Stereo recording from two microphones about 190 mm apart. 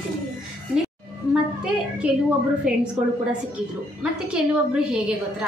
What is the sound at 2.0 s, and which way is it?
Speech, 5° right (ahead or behind).